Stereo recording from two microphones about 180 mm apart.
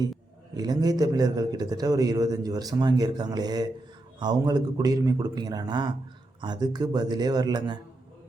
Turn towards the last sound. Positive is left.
turn(degrees=-25)  # may be behind; listen again after turning